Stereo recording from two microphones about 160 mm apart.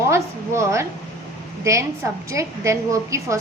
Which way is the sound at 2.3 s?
20° right (ahead or behind).